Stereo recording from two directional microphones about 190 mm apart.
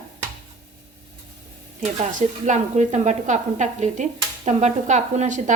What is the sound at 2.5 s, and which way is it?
A woman's voice, 40° right (ahead or behind).